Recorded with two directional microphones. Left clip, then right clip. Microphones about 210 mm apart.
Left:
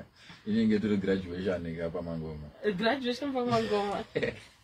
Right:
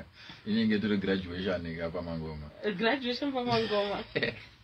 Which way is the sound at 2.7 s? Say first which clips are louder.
Left 1 dB; 55° left (ahead or behind).